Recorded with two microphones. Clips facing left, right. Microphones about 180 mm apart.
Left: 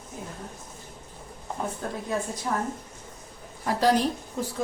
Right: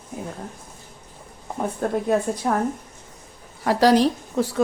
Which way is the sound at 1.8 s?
60° right (ahead or behind).